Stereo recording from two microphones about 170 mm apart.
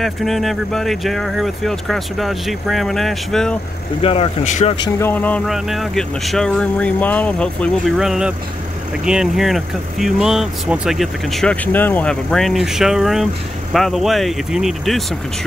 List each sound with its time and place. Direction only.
0.0 s speech: centre (ahead or behind)
4.0 s speech: 35° left (ahead or behind)
4.8 s vehicle: 15° left (ahead or behind)
5.5 s speech: centre (ahead or behind)